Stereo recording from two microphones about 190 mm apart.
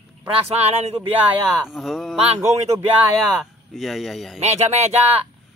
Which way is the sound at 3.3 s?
Centre (ahead or behind).